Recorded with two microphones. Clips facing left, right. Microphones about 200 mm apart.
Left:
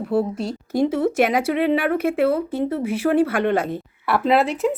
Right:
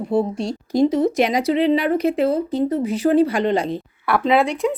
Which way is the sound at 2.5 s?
10° left (ahead or behind).